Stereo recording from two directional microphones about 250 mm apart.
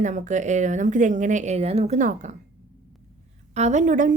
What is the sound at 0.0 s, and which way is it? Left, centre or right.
Speech, right.